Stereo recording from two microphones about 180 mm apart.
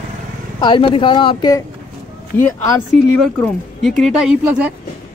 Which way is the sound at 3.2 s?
5° left (ahead or behind).